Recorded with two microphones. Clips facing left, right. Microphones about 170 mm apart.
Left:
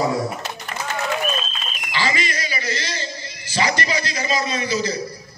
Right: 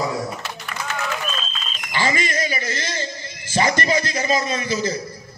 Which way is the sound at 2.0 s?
50° right (ahead or behind).